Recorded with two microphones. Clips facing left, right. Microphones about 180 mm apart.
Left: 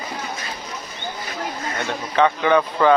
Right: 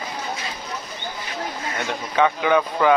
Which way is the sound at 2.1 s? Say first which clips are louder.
Left 2 dB; 10° right (ahead or behind).